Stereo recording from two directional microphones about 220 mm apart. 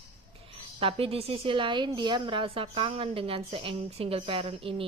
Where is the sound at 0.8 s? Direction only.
25° right (ahead or behind).